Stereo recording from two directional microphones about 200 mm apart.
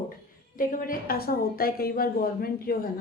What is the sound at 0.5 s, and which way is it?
Speech, 45° left (ahead or behind).